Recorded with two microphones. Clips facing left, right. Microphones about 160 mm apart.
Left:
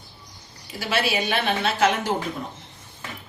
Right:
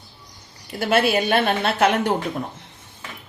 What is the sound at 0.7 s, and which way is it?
Speech, 55° right (ahead or behind).